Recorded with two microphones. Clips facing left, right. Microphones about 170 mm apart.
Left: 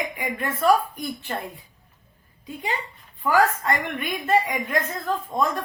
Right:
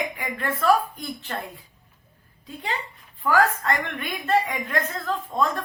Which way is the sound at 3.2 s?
15° left (ahead or behind).